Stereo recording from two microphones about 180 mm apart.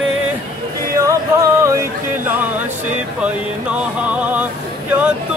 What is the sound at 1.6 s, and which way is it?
Music, 15° right (ahead or behind).